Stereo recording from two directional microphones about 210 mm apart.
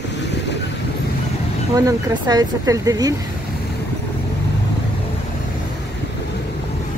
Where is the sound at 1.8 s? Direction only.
15° right (ahead or behind).